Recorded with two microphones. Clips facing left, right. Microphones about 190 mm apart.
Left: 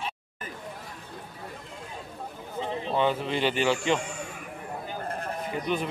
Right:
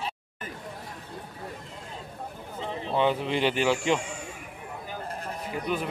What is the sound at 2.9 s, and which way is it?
Speech, 15° right (ahead or behind).